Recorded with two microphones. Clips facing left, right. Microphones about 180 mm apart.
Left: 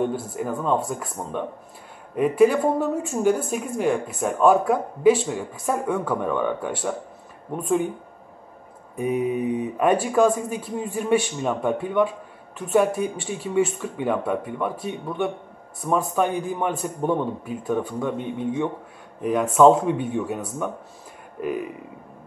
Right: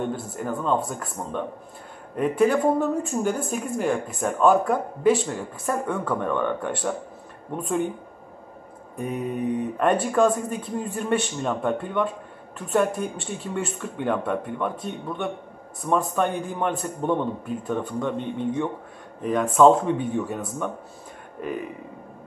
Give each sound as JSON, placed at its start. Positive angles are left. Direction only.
{"t": 0.0, "sound": "a woman's voice", "side_deg": 5}
{"t": 8.9, "sound": "a woman's voice", "side_deg": 5}